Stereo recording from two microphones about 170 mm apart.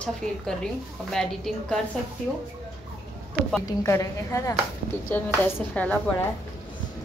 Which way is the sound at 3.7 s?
15° left (ahead or behind).